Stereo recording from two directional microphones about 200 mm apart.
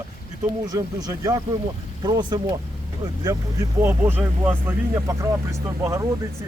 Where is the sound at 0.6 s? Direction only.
20° right (ahead or behind).